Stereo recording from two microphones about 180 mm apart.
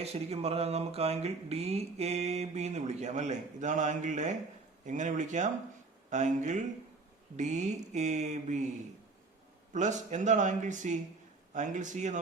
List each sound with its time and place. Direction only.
0.0 s speech: 35° right (ahead or behind)
9.7 s speech: 40° right (ahead or behind)